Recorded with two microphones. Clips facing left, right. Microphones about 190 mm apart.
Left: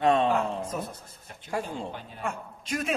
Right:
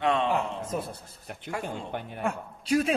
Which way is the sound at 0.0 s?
40° left (ahead or behind).